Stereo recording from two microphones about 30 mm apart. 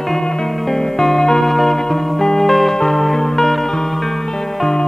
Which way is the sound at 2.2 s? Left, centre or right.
Centre.